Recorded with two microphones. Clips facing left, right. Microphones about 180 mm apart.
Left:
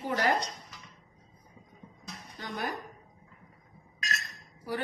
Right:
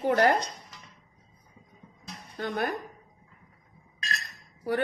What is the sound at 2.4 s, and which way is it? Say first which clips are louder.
Speech: right 6 dB; 60° right (ahead or behind).